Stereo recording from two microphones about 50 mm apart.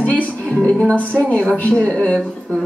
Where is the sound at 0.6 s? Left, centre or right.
Centre.